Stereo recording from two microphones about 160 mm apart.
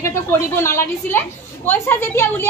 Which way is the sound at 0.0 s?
15° left (ahead or behind).